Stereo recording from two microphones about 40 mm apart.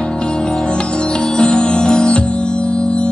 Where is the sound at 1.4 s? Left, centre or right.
Left.